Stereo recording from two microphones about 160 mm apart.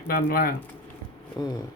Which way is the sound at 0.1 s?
65° left (ahead or behind).